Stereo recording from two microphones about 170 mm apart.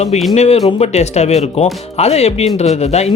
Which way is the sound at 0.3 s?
35° left (ahead or behind).